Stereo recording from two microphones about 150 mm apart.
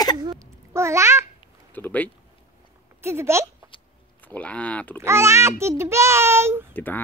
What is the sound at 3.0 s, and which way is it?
Speech, 15° right (ahead or behind).